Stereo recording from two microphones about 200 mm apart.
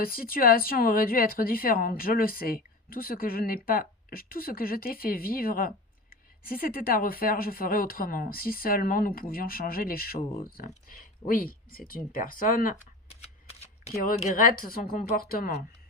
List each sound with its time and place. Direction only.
0.0 s a woman's voice: 45° left (ahead or behind)
13.1 s shuffling cards: 30° left (ahead or behind)
13.9 s a woman's voice: 45° left (ahead or behind)